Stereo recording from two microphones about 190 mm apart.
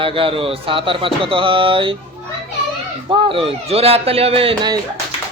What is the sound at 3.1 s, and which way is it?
Speech, 30° right (ahead or behind).